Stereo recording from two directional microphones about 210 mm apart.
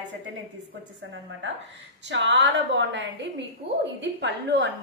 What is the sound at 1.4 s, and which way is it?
A woman's voice, 60° right (ahead or behind).